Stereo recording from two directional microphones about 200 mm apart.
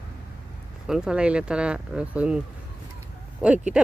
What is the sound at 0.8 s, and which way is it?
Speech, 5° right (ahead or behind).